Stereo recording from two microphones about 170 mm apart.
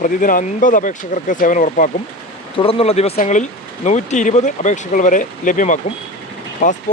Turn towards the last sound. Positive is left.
turn(degrees=45)  # may be behind; listen again after turning